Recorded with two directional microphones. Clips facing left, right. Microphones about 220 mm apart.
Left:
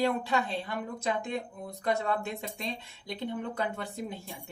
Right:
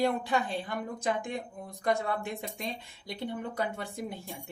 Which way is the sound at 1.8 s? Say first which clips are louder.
Even; 15° right (ahead or behind).